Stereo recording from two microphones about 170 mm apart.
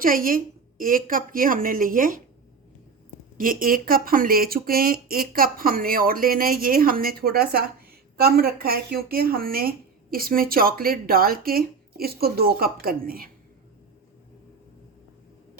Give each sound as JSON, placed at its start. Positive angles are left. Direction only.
{"t": 0.0, "sound": "speech", "side_deg": -55}
{"t": 3.3, "sound": "speech", "side_deg": -55}